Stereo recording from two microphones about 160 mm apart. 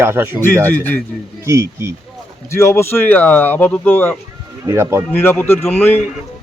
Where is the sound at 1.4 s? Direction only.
20° right (ahead or behind).